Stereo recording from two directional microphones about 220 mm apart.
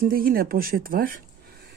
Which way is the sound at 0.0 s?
40° right (ahead or behind).